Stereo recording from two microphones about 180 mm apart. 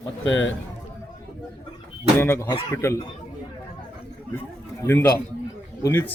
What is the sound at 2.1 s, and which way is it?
Speech, 15° left (ahead or behind).